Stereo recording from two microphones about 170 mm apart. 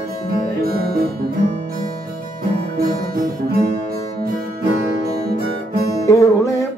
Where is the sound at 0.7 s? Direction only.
60° right (ahead or behind).